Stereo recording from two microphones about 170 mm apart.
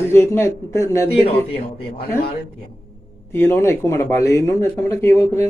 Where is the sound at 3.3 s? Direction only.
15° left (ahead or behind).